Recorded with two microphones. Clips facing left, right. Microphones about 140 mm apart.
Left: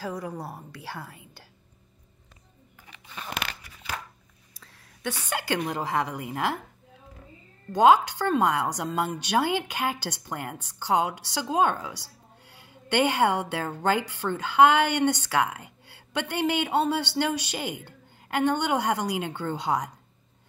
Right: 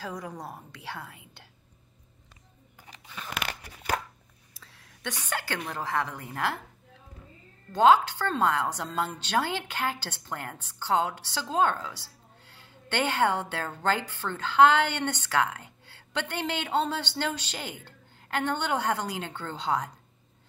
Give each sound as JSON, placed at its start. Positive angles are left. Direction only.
{"t": 0.0, "sound": "speech", "side_deg": 5}
{"t": 3.4, "sound": "scissors", "side_deg": -45}
{"t": 4.6, "sound": "a sound", "side_deg": 0}
{"t": 5.3, "sound": "a woman's voice", "side_deg": 15}
{"t": 7.7, "sound": "a woman's voice", "side_deg": 15}